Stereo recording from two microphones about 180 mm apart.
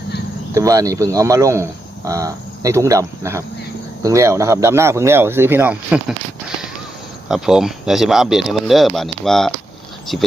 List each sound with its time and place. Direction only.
0.5 s speech: 20° right (ahead or behind)
7.3 s speech: centre (ahead or behind)